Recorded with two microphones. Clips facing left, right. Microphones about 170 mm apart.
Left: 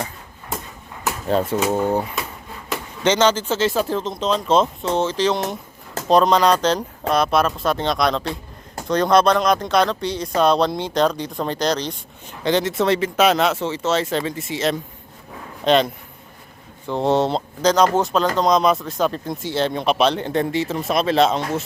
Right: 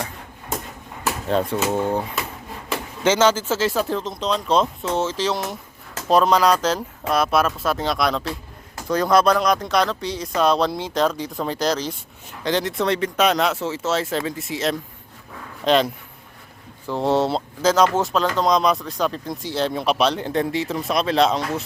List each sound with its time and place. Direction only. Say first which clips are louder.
1.3 s speech: left 2 dB; 5° left (ahead or behind)
3.0 s speech: even; 5° right (ahead or behind)
8.2 s a sound: left 2 dB; 30° left (ahead or behind)
8.9 s speech: left 1 dB; 5° right (ahead or behind)